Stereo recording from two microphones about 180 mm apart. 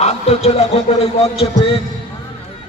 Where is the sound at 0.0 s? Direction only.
35° left (ahead or behind).